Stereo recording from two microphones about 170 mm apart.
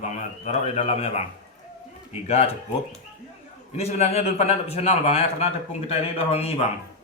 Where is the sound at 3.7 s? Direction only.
40° left (ahead or behind).